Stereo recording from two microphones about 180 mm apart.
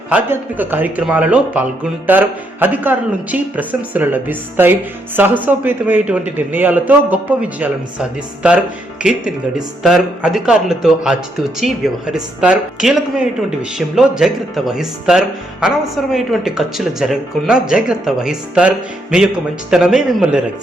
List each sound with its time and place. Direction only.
0.1 s speech: 10° right (ahead or behind)
9.8 s speech: centre (ahead or behind)